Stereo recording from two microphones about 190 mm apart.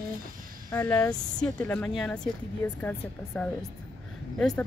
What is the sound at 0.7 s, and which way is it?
Speech, 10° left (ahead or behind).